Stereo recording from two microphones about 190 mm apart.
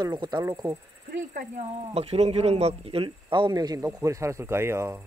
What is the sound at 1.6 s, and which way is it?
Speech, 30° right (ahead or behind).